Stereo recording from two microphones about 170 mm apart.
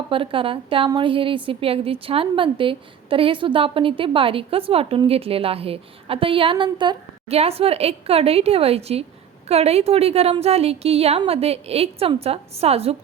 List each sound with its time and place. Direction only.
0.1 s a woman's voice: 30° right (ahead or behind)